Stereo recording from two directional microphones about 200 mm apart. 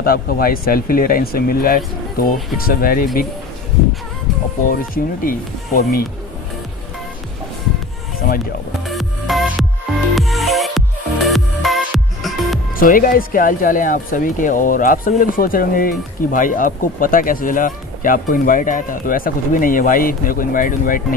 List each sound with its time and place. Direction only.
0.0 s speech: 45° left (ahead or behind)
4.6 s speech: 45° left (ahead or behind)
8.8 s music: centre (ahead or behind)
12.7 s speech: 45° left (ahead or behind)